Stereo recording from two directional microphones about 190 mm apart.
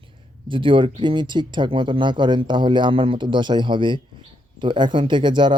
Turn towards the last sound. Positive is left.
turn(degrees=-25)  # may be behind; listen again after turning